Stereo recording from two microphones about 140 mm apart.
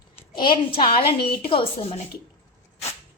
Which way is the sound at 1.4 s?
40° left (ahead or behind).